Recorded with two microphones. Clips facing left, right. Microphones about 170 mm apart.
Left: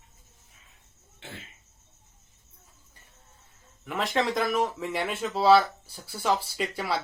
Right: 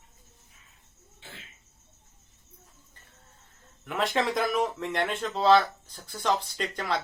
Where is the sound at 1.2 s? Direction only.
65° left (ahead or behind).